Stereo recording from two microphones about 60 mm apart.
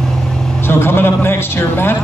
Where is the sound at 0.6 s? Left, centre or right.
Left.